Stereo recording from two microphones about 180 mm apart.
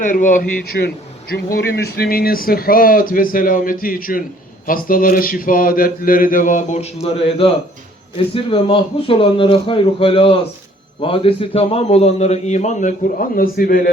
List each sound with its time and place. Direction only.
0.0 s a man's voice: 45° left (ahead or behind)